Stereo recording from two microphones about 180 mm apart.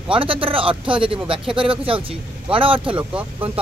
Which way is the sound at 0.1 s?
30° right (ahead or behind).